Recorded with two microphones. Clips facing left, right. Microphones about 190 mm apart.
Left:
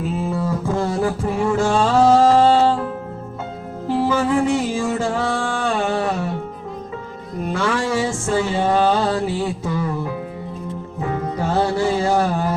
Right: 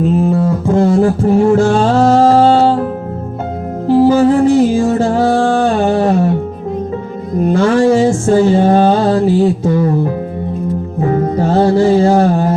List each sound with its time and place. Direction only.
0.2 s music: 50° right (ahead or behind)
3.8 s music: 40° right (ahead or behind)
7.4 s music: 40° right (ahead or behind)
11.0 s music: 40° right (ahead or behind)